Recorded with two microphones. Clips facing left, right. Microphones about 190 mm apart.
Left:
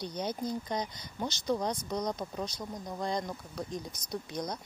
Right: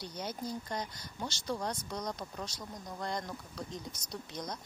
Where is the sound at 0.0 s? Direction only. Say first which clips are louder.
Left 5 dB; 15° left (ahead or behind).